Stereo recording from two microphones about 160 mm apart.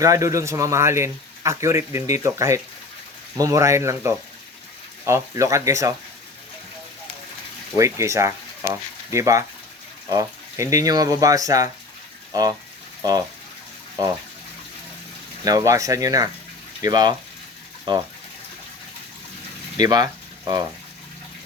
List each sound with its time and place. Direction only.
0.0 s a man's voice: 20° right (ahead or behind)
7.8 s speech: 20° right (ahead or behind)
15.4 s speech: 20° right (ahead or behind)
19.8 s speech: 25° right (ahead or behind)